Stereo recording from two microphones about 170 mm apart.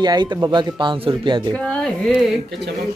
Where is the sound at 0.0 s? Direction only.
25° right (ahead or behind).